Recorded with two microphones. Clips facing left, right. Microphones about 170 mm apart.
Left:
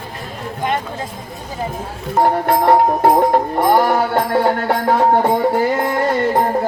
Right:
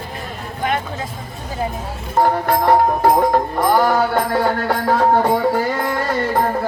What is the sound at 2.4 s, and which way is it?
Music, 25° left (ahead or behind).